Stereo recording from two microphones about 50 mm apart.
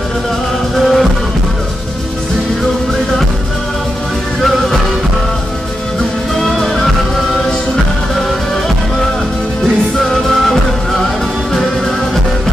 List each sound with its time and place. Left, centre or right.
0.7 s music: centre
4.4 s music: centre
6.6 s music: centre
10.5 s music: centre